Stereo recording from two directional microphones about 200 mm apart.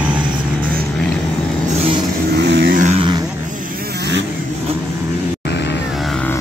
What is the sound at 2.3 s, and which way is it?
Vehicle, 55° right (ahead or behind).